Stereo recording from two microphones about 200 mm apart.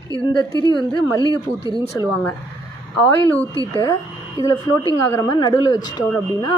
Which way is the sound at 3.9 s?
15° left (ahead or behind).